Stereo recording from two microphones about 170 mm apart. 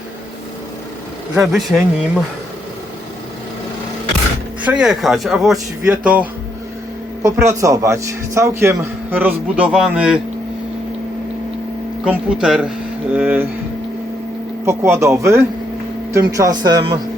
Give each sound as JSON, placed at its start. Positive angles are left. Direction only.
{"t": 1.4, "sound": "speech", "side_deg": 0}
{"t": 4.6, "sound": "a man's voice", "side_deg": -5}
{"t": 12.0, "sound": "a man's voice", "side_deg": -5}
{"t": 14.6, "sound": "a man's voice", "side_deg": -15}